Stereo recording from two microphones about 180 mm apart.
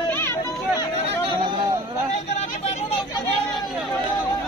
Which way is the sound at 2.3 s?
40° left (ahead or behind).